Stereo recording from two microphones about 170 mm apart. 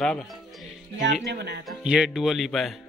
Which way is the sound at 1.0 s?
90° right.